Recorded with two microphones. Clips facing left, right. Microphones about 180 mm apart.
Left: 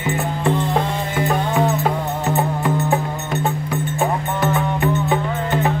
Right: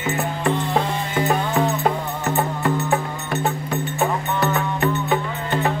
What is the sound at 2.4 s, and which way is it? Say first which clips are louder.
Music: even; 15° left (ahead or behind).